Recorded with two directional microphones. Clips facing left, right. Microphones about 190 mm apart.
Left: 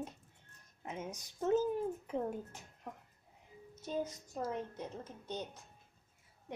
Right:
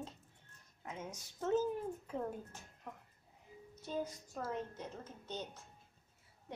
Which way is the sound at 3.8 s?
20° left (ahead or behind).